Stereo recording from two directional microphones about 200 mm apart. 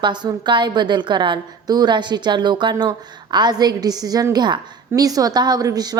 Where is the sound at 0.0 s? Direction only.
20° right (ahead or behind).